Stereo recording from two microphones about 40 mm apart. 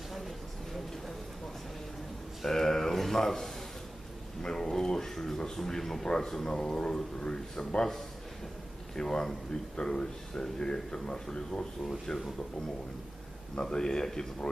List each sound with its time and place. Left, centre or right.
0.1 s a sound: centre
2.4 s speech: centre
9.0 s speech: centre
11.9 s speech: centre
13.6 s speech: centre